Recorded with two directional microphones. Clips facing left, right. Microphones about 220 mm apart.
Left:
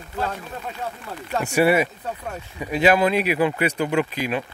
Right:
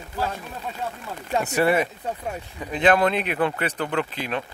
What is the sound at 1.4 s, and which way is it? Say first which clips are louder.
Speech: left 3 dB; 10° left (ahead or behind).